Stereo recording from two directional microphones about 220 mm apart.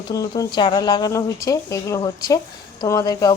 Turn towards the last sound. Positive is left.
turn(degrees=15)  # may be behind; listen again after turning